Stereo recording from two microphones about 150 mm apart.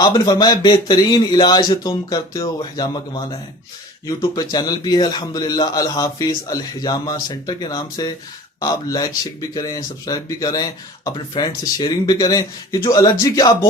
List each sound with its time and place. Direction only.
0.0 s speech: 30° left (ahead or behind)